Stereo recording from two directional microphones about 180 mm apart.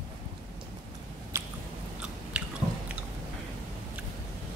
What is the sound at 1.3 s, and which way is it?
Biting, 15° right (ahead or behind).